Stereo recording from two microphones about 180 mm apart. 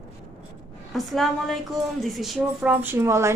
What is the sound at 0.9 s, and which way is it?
A woman's voice, centre (ahead or behind).